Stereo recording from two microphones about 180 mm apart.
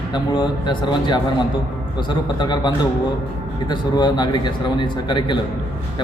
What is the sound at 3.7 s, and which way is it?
A man's voice, 25° left (ahead or behind).